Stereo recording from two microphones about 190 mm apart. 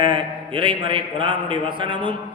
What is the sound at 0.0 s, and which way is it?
A man's voice, 25° right (ahead or behind).